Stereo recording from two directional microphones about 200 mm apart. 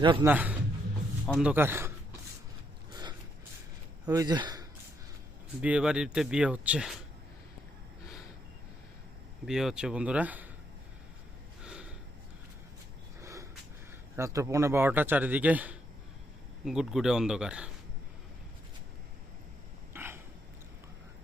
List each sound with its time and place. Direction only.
0.0 s a man's voice: 25° right (ahead or behind)
0.3 s a man's voice: 10° right (ahead or behind)
2.9 s mechanisms: 20° right (ahead or behind)
4.0 s speech: 20° right (ahead or behind)
5.6 s speech: 5° right (ahead or behind)
9.5 s speech: 5° right (ahead or behind)
11.6 s snort: 5° right (ahead or behind)
13.2 s a sound: 15° right (ahead or behind)
14.2 s a man's voice: 15° right (ahead or behind)
19.9 s a sound: 10° right (ahead or behind)